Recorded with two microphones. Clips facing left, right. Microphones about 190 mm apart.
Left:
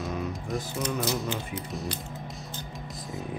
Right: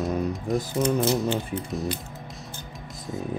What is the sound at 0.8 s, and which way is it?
Speech, 25° right (ahead or behind).